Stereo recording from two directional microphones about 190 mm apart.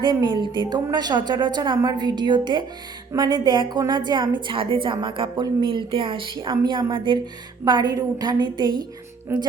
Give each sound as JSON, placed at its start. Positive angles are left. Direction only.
{"t": 0.0, "sound": "a woman's voice", "side_deg": -25}
{"t": 9.3, "sound": "speech", "side_deg": -10}